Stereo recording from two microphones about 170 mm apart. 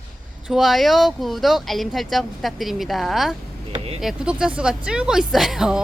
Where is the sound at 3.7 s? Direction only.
35° right (ahead or behind).